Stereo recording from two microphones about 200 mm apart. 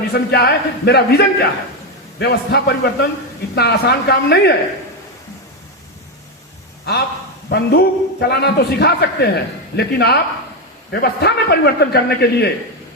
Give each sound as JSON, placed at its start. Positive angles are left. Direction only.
{"t": 0.1, "sound": "a man's voice", "side_deg": 55}
{"t": 6.9, "sound": "a man's voice", "side_deg": 55}